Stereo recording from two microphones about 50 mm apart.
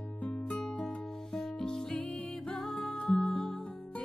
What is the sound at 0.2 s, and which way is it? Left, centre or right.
Music, left.